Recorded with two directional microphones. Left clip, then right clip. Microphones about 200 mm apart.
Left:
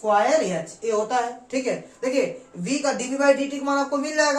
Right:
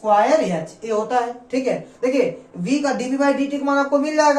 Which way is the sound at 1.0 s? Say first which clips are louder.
Right 3 dB; 15° left (ahead or behind).